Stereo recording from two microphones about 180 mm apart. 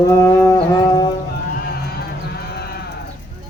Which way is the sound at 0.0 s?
20° left (ahead or behind).